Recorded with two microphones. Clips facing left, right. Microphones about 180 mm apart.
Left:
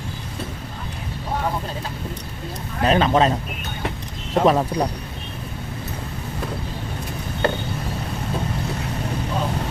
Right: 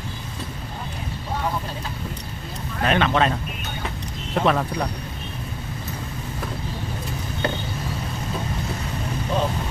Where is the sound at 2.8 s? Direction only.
35° left (ahead or behind).